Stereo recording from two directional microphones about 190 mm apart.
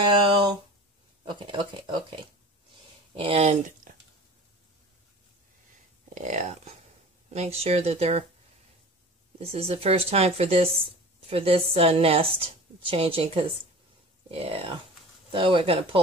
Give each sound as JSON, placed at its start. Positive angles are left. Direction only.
{"t": 1.2, "sound": "speech", "side_deg": -25}
{"t": 3.2, "sound": "speech", "side_deg": -30}
{"t": 6.1, "sound": "speech", "side_deg": -40}
{"t": 9.4, "sound": "speech", "side_deg": -30}